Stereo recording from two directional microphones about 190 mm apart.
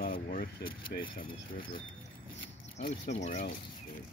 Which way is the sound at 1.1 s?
50° left (ahead or behind).